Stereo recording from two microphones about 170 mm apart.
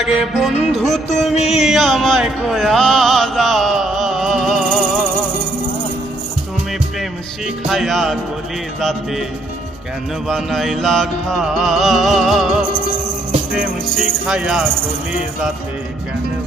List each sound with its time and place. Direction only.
0.2 s music: centre (ahead or behind)
1.3 s music: 40° left (ahead or behind)
1.6 s music: centre (ahead or behind)
7.4 s music: centre (ahead or behind)
10.2 s music: centre (ahead or behind)
14.3 s music: 5° right (ahead or behind)